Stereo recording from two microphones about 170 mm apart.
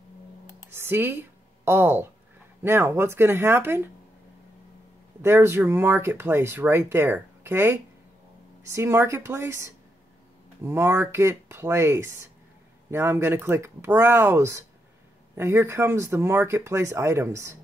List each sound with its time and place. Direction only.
0.7 s speech: 15° right (ahead or behind)
5.2 s speech: 15° right (ahead or behind)